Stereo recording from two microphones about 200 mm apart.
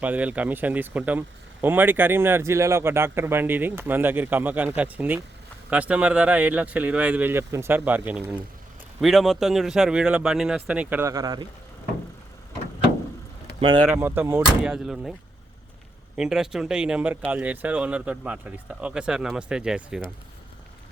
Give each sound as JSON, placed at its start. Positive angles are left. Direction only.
{"t": 0.0, "sound": "speech", "side_deg": -10}
{"t": 13.6, "sound": "speech", "side_deg": -25}
{"t": 13.8, "sound": "speech", "side_deg": -10}
{"t": 16.1, "sound": "speech", "side_deg": 0}